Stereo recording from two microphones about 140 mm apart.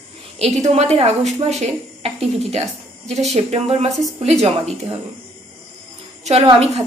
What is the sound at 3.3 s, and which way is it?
A woman's voice, 45° right (ahead or behind).